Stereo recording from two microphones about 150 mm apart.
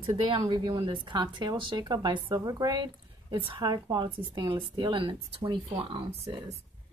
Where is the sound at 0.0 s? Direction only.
35° right (ahead or behind).